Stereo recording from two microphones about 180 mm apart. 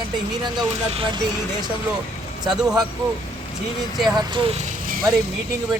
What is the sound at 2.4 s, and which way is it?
Speech, 25° right (ahead or behind).